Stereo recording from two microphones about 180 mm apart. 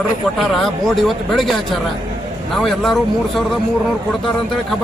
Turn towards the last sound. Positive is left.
turn(degrees=0)  # may be behind; listen again after turning